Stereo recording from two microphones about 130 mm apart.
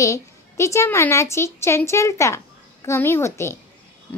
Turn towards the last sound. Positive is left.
turn(degrees=20)  # may be behind; listen again after turning